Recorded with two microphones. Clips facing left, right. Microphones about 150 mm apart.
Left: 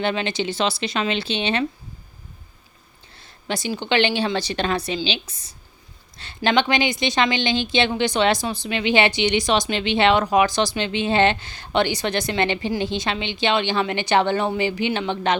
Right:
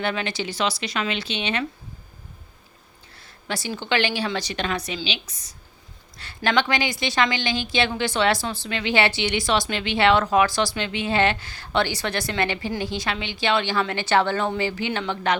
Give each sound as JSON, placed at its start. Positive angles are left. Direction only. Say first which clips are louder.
{"t": 0.0, "sound": "a woman's voice", "louder": "left 3 dB", "side_deg": 25}
{"t": 3.2, "sound": "a woman's voice", "louder": "left 3 dB", "side_deg": 20}